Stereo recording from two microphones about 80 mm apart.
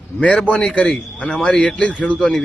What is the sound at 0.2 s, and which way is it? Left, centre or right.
A man's voice, centre.